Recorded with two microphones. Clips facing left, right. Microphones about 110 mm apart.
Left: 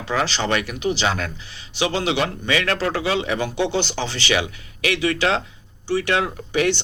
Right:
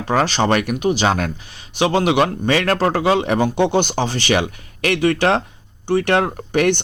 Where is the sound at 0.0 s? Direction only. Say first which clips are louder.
Right 5 dB; 45° right (ahead or behind).